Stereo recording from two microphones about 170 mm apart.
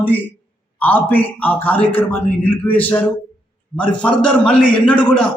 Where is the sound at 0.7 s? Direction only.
10° left (ahead or behind).